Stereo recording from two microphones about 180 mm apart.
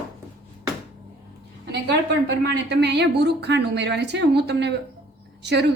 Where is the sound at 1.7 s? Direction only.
70° right (ahead or behind).